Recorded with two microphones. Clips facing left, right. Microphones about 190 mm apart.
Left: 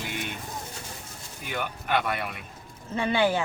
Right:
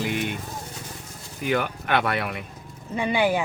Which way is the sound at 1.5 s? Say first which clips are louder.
Right 5 dB; 65° right (ahead or behind).